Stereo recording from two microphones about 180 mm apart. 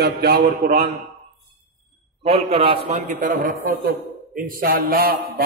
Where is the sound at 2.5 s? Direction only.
30° right (ahead or behind).